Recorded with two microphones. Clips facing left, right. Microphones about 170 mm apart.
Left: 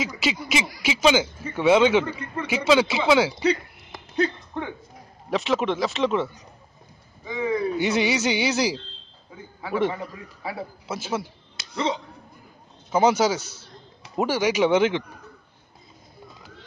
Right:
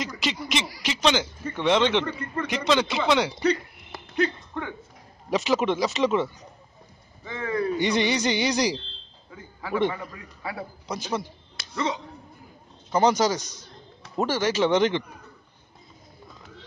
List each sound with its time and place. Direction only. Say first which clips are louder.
0.0 s a man's voice: left 3 dB; 5° left (ahead or behind)
5.3 s speech: even; centre (ahead or behind)
7.2 s speech: left 2 dB; 15° left (ahead or behind)
9.9 s a man's voice: left 3 dB; 20° left (ahead or behind)
10.9 s speech: left 1 dB; 5° left (ahead or behind)
11.7 s speech: left 2 dB; 30° left (ahead or behind)
12.9 s a man's voice: left 1 dB; 10° left (ahead or behind)